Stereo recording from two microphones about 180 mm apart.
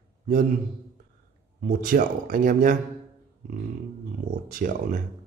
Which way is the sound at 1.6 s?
50° right (ahead or behind).